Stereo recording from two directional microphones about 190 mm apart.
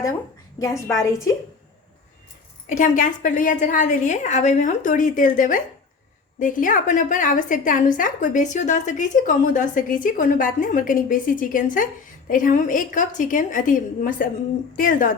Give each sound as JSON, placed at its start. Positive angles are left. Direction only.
{"t": 0.6, "sound": "a woman's voice", "side_deg": 15}
{"t": 2.6, "sound": "a woman's voice", "side_deg": 40}